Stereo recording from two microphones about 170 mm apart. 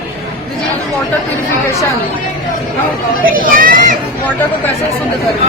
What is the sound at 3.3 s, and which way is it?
Speech, 55° right (ahead or behind).